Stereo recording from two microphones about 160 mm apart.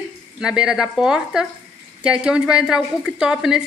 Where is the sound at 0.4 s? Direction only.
5° right (ahead or behind).